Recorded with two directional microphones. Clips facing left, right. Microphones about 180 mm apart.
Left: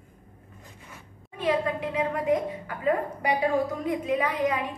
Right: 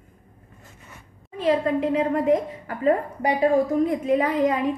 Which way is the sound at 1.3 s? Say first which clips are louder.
Right 5 dB; 35° right (ahead or behind).